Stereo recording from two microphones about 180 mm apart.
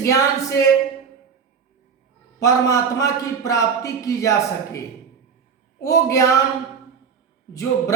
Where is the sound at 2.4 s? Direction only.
20° left (ahead or behind).